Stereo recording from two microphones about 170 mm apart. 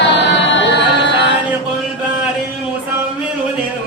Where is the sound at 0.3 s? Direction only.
90° left.